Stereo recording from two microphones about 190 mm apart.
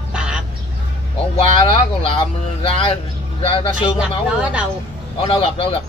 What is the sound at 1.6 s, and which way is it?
Speech, 25° left (ahead or behind).